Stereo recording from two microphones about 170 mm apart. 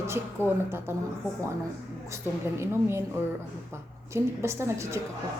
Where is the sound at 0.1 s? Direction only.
15° right (ahead or behind).